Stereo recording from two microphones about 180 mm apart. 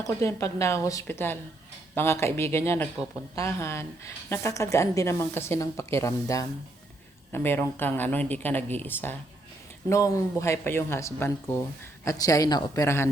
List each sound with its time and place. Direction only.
0.0 s a woman's voice: 15° left (ahead or behind)